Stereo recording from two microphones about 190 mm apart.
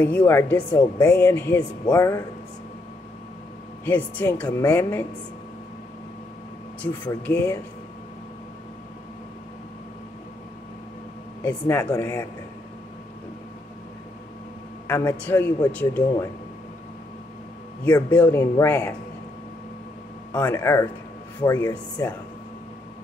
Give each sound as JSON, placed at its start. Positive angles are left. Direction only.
{"t": 0.0, "sound": "a man's voice", "side_deg": 10}
{"t": 3.8, "sound": "a man's voice", "side_deg": 10}
{"t": 6.8, "sound": "a man's voice", "side_deg": 10}
{"t": 11.4, "sound": "a man's voice", "side_deg": 15}
{"t": 14.9, "sound": "a man's voice", "side_deg": 10}
{"t": 18.1, "sound": "a man's voice", "side_deg": 5}
{"t": 20.3, "sound": "a man's voice", "side_deg": 15}